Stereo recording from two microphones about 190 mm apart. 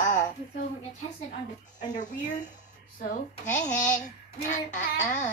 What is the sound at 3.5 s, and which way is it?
Speech, 5° left (ahead or behind).